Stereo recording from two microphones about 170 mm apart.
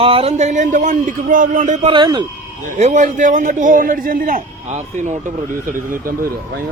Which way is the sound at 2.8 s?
45° right (ahead or behind).